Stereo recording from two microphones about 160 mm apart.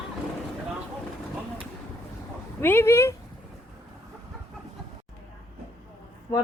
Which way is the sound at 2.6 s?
15° left (ahead or behind).